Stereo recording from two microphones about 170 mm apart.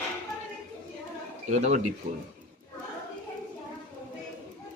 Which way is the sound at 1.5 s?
45° right (ahead or behind).